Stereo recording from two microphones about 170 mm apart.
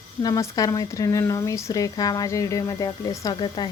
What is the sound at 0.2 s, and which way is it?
A woman's voice, 20° left (ahead or behind).